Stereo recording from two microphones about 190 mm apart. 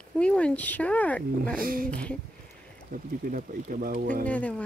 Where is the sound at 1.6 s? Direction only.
50° right (ahead or behind).